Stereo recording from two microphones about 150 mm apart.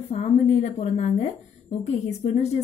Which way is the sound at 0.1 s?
45° left (ahead or behind).